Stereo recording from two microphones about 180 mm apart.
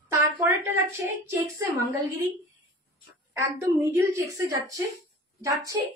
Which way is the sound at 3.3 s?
15° right (ahead or behind).